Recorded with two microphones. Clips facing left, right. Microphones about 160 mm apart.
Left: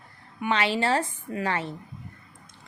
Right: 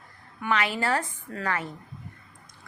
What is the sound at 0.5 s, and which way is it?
A woman's voice, 25° left (ahead or behind).